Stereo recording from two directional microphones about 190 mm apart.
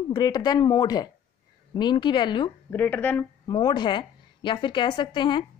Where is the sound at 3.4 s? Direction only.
25° left (ahead or behind).